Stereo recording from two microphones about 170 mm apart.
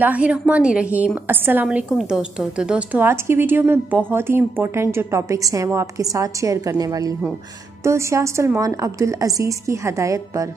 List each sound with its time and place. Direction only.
0.0 s a woman's voice: 10° right (ahead or behind)